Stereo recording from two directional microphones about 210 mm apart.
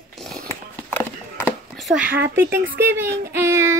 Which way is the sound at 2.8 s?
10° right (ahead or behind).